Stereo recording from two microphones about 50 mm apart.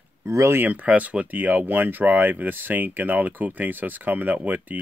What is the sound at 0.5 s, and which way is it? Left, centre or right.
Speech, right.